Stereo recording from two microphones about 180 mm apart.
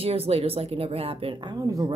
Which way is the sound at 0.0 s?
35° right (ahead or behind).